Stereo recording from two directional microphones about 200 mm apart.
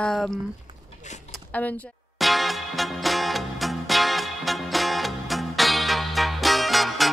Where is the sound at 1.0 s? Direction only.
35° left (ahead or behind).